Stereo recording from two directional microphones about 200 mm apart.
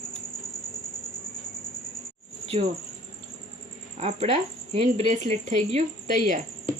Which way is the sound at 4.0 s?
30° right (ahead or behind).